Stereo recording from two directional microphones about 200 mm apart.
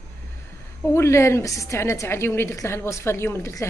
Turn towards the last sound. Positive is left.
turn(degrees=15)  # may be behind; listen again after turning